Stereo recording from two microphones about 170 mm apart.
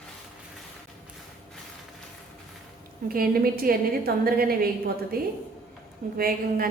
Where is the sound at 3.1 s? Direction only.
60° right (ahead or behind).